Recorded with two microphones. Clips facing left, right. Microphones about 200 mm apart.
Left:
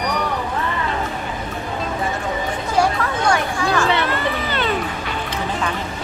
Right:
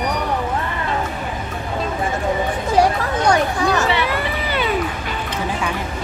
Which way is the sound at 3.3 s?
20° right (ahead or behind).